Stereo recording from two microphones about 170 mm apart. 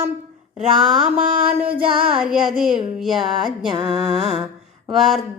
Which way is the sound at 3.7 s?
25° right (ahead or behind).